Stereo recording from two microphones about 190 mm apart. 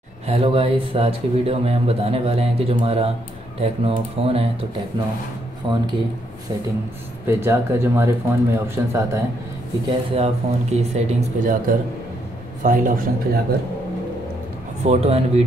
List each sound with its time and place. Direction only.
0.3 s speech: 30° right (ahead or behind)
5.7 s speech: 25° right (ahead or behind)
7.2 s speech: 15° right (ahead or behind)
9.8 s a man's voice: 30° right (ahead or behind)
14.8 s speech: 35° right (ahead or behind)